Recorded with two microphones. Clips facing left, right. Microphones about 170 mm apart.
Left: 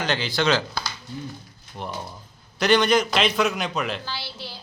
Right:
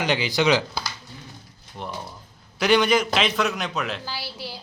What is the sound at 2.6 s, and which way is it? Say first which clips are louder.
A woman's voice: even; 5° right (ahead or behind).